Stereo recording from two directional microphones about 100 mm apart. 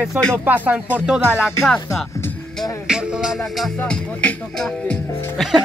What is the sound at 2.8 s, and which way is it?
Music, 5° right (ahead or behind).